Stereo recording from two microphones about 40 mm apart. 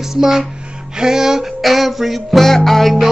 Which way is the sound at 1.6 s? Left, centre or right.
Centre.